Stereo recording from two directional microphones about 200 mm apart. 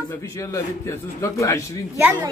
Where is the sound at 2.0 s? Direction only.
5° right (ahead or behind).